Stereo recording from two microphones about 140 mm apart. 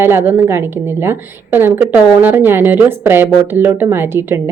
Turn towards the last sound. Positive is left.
turn(degrees=-15)  # may be behind; listen again after turning